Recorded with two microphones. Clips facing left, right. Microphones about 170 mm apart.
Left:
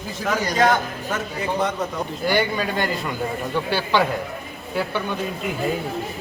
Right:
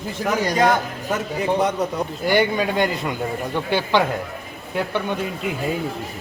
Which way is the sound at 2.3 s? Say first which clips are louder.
Right 3 dB; 20° right (ahead or behind).